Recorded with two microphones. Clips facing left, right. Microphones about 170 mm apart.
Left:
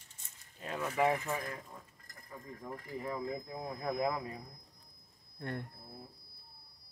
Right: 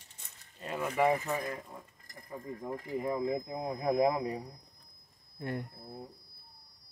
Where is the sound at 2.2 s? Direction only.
25° right (ahead or behind).